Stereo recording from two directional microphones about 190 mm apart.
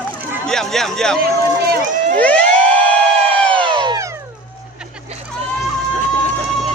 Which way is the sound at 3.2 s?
30° right (ahead or behind).